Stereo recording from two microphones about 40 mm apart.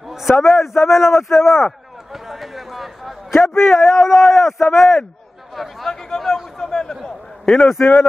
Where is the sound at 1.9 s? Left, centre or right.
Centre.